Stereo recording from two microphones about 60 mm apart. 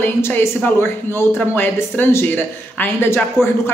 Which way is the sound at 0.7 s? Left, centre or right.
Left.